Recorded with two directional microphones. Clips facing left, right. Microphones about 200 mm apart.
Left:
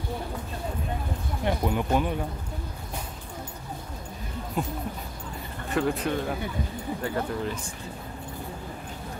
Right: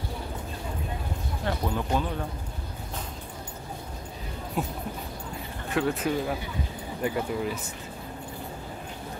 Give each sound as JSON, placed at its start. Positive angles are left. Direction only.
{"t": 1.4, "sound": "speech", "side_deg": 15}
{"t": 4.6, "sound": "speech", "side_deg": 0}
{"t": 7.0, "sound": "speech", "side_deg": -10}